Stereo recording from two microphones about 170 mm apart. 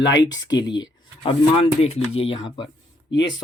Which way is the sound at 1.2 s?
35° left (ahead or behind).